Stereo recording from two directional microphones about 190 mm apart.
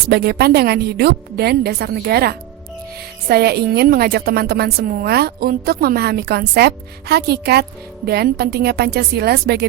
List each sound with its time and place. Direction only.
0.1 s a woman's voice: 55° right (ahead or behind)